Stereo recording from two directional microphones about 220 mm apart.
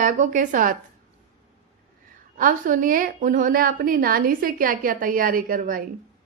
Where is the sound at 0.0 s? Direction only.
35° right (ahead or behind).